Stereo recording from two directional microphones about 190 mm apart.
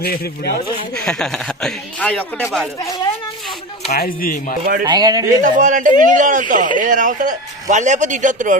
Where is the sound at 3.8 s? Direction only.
55° left (ahead or behind).